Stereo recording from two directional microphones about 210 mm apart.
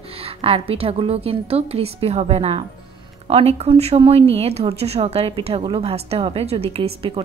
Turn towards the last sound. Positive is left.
turn(degrees=-25)  # may be behind; listen again after turning